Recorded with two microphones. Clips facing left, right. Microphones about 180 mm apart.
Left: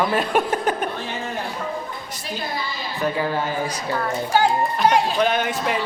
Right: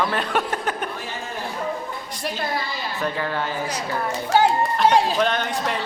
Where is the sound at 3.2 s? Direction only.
10° left (ahead or behind).